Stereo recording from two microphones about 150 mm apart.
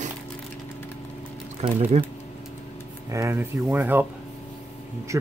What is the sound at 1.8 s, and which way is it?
Speech, 45° right (ahead or behind).